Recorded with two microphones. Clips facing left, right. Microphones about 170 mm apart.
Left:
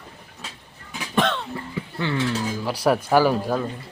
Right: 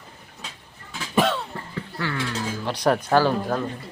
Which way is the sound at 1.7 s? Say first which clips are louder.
Left 3 dB; 20° left (ahead or behind).